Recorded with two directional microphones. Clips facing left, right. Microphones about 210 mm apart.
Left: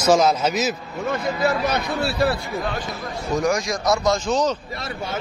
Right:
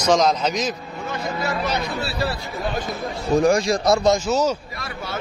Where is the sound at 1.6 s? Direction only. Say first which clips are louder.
Left 2 dB; 50° left (ahead or behind).